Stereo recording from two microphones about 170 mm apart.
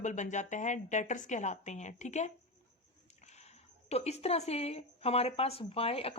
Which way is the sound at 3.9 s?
40° left (ahead or behind).